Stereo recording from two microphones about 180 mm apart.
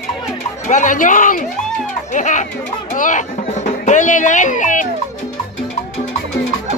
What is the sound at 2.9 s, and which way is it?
Music, 45° left (ahead or behind).